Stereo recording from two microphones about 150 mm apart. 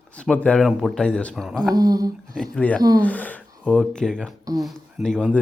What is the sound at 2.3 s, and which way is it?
Speech, 5° left (ahead or behind).